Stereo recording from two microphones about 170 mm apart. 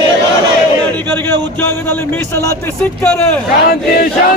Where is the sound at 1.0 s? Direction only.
10° left (ahead or behind).